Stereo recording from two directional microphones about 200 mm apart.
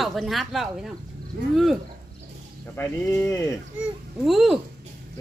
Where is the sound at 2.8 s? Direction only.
15° left (ahead or behind).